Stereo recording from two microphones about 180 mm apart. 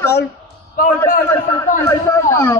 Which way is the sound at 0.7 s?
50° left (ahead or behind).